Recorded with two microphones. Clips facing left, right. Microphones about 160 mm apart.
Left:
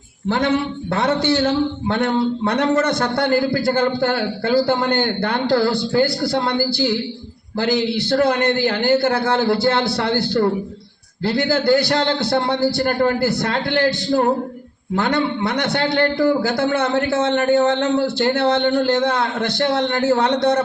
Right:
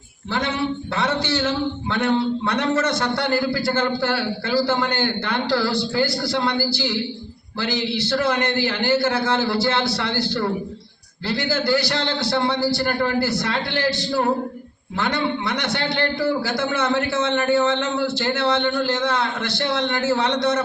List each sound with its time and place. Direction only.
0.3 s a man's voice: 55° left (ahead or behind)
8.2 s a man's voice: 55° left (ahead or behind)